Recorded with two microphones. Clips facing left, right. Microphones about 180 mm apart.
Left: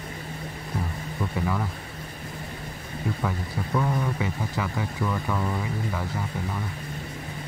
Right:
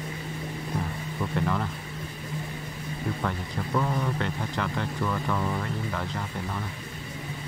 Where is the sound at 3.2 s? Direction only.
5° left (ahead or behind).